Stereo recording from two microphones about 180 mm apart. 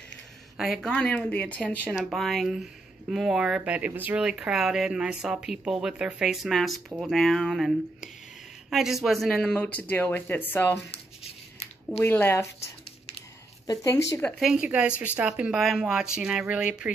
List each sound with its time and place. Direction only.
0.6 s speech: centre (ahead or behind)
12.0 s speech: 10° left (ahead or behind)
13.7 s speech: 15° left (ahead or behind)
14.4 s speech: 5° right (ahead or behind)